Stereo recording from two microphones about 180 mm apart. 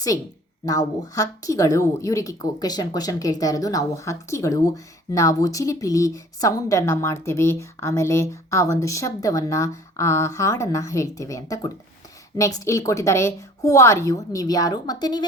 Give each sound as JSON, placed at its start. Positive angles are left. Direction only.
{"t": 0.6, "sound": "a woman's voice", "side_deg": 20}